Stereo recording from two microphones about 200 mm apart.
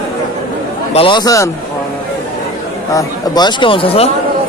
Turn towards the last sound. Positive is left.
turn(degrees=30)  # may be behind; listen again after turning